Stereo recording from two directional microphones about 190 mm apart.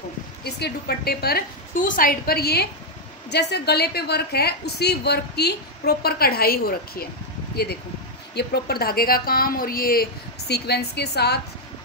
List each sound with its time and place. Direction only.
0.4 s a woman's voice: 60° left (ahead or behind)